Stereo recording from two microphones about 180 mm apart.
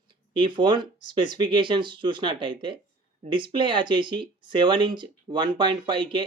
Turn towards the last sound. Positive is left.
turn(degrees=-25)  # may be behind; listen again after turning